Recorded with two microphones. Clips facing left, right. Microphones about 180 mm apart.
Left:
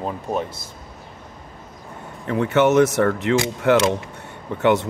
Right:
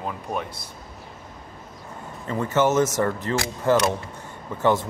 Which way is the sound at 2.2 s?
65° left (ahead or behind).